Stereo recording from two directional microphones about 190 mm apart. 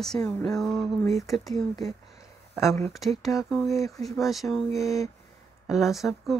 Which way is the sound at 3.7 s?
15° left (ahead or behind).